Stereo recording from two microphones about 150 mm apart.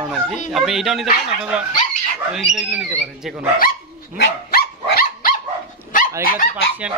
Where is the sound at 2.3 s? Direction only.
5° right (ahead or behind).